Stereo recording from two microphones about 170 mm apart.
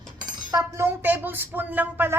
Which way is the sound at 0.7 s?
15° right (ahead or behind).